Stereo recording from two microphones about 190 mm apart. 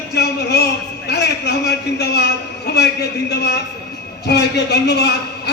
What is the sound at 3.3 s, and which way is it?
A man's voice, 60° left (ahead or behind).